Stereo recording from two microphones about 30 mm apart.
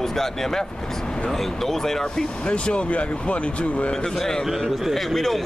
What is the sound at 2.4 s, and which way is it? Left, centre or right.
Speech, left.